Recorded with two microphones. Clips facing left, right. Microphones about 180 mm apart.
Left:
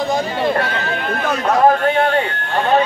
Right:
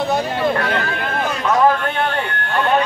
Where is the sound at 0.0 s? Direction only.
Centre (ahead or behind).